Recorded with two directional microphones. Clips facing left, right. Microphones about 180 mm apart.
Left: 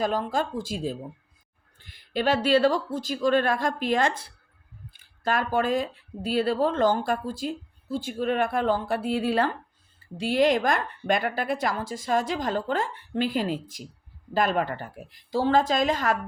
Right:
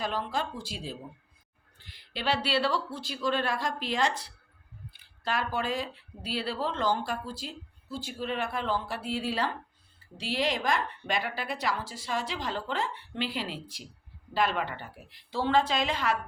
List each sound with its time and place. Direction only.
0.0 s speech: 45° left (ahead or behind)